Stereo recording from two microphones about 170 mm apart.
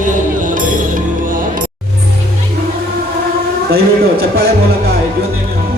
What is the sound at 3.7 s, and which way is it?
Speech, 65° right (ahead or behind).